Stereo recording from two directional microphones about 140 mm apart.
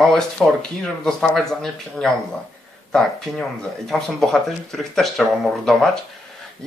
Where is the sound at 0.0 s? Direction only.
5° left (ahead or behind).